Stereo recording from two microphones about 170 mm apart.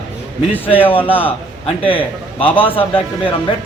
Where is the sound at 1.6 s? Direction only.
30° left (ahead or behind).